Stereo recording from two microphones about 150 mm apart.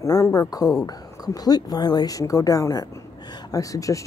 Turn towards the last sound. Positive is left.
turn(degrees=20)  # may be behind; listen again after turning